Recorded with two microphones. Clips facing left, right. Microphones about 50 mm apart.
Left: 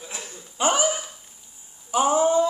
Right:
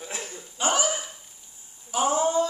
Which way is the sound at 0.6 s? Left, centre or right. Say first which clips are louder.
Left 3 dB; centre.